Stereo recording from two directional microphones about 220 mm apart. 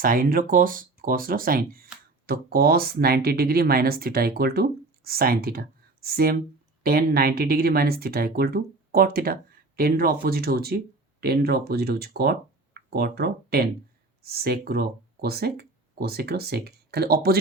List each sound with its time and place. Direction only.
0.0 s speech: 40° right (ahead or behind)